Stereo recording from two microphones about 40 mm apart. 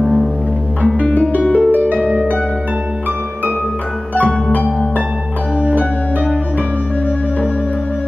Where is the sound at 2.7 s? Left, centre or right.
Right.